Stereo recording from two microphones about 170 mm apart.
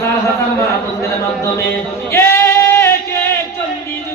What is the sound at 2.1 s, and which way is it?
Singing, 15° left (ahead or behind).